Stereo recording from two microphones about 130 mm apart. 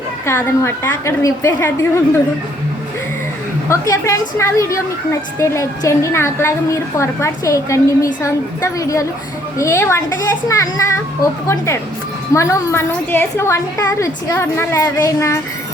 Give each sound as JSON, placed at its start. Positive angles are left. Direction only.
{"t": 0.3, "sound": "a woman's voice", "side_deg": 20}
{"t": 3.7, "sound": "a woman's voice", "side_deg": 25}